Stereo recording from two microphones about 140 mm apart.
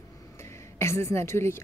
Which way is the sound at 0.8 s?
20° left (ahead or behind).